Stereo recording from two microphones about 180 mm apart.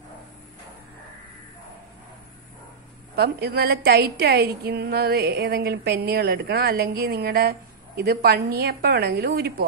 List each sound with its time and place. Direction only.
3.2 s a woman's voice: 60° right (ahead or behind)